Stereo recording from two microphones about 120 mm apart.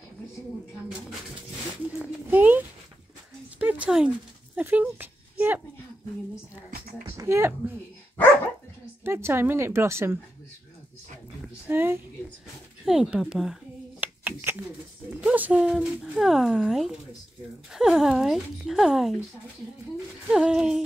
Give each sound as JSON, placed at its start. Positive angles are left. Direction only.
{"t": 2.0, "sound": "a sound", "side_deg": -15}
{"t": 4.6, "sound": "speech", "side_deg": -15}
{"t": 7.2, "sound": "a woman's voice", "side_deg": -20}
{"t": 9.0, "sound": "a woman's voice", "side_deg": -20}
{"t": 11.7, "sound": "speech", "side_deg": -20}
{"t": 12.8, "sound": "speech", "side_deg": -5}
{"t": 13.9, "sound": "hands", "side_deg": -15}
{"t": 15.1, "sound": "speech", "side_deg": -10}
{"t": 20.2, "sound": "speech", "side_deg": -5}